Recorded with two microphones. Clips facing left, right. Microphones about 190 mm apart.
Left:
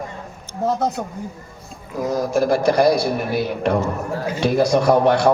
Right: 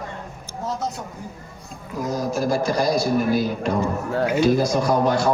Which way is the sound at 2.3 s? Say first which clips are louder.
Left 6 dB; 60° left (ahead or behind).